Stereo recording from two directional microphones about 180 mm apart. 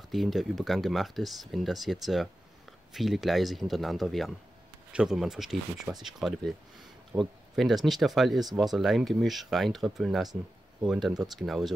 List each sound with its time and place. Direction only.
0.1 s speech: centre (ahead or behind)